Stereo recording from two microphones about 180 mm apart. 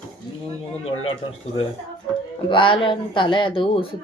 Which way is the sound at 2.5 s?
30° left (ahead or behind).